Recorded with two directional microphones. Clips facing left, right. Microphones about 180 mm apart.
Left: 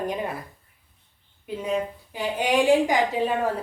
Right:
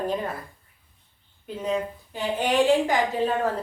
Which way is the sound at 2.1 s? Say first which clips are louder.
Even; 10° left (ahead or behind).